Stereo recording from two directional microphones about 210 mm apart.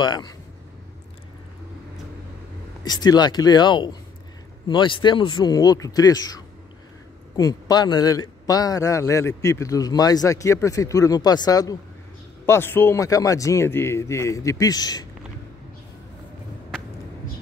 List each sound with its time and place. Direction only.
0.0 s a man's voice: 20° left (ahead or behind)
2.8 s a man's voice: 20° left (ahead or behind)